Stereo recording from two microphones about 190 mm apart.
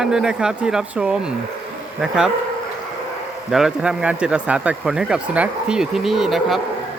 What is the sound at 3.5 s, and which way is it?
Speech, 5° right (ahead or behind).